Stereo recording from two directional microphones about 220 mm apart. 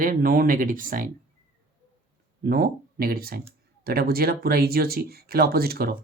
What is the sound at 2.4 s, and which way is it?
Speech, 45° right (ahead or behind).